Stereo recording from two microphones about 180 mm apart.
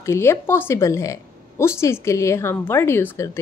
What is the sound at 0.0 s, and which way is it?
A woman's voice, 15° left (ahead or behind).